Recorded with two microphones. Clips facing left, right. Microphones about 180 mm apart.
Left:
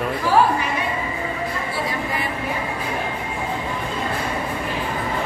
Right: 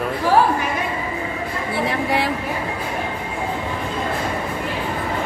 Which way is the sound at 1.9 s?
80° right.